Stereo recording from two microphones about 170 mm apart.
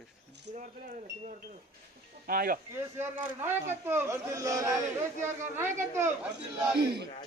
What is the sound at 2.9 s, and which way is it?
Speech, 15° right (ahead or behind).